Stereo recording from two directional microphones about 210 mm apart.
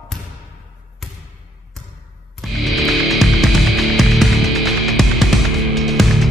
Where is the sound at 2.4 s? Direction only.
Centre (ahead or behind).